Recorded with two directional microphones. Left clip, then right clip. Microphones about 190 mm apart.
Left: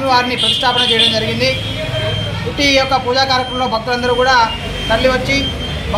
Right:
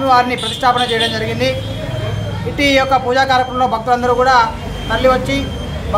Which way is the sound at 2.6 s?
35° right (ahead or behind).